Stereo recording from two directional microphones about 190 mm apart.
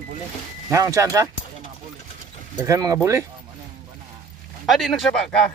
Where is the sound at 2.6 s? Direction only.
15° right (ahead or behind).